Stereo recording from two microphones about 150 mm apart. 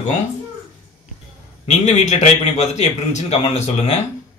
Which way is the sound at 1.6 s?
50° left (ahead or behind).